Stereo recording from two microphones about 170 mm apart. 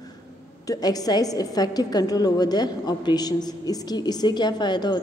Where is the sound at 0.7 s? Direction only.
20° left (ahead or behind).